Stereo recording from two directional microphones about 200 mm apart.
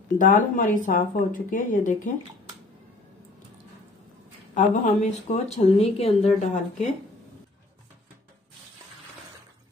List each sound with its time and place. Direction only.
0.2 s speech: 40° left (ahead or behind)
4.6 s speech: 35° left (ahead or behind)